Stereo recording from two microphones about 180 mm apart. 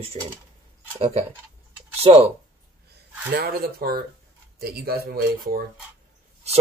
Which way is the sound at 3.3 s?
60° right (ahead or behind).